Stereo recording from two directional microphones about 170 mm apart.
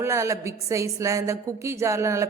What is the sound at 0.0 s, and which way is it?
A woman's voice, 15° right (ahead or behind).